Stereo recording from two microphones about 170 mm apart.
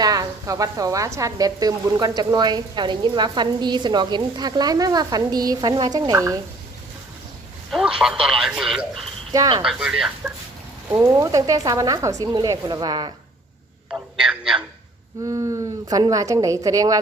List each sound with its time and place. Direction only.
0.0 s a woman's voice: 20° right (ahead or behind)
7.7 s speech: centre (ahead or behind)
9.3 s a woman's voice: 25° right (ahead or behind)
9.6 s speech: centre (ahead or behind)
10.9 s a woman's voice: 20° right (ahead or behind)
13.9 s a sound: 5° right (ahead or behind)
15.3 s a woman's voice: 20° right (ahead or behind)